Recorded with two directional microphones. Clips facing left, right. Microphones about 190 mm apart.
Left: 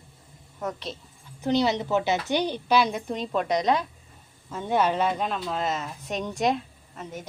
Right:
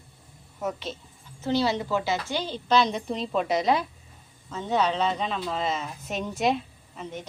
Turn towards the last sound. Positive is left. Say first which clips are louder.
# right 1 dB
turn(degrees=0)  # may be behind; listen again after turning